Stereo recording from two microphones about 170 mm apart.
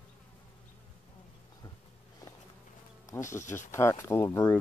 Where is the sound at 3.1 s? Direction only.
15° left (ahead or behind).